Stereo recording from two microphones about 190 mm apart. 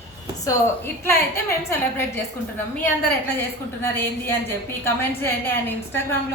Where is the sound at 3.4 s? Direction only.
10° left (ahead or behind).